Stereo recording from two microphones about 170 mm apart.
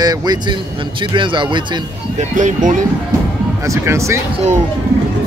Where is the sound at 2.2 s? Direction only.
45° right (ahead or behind).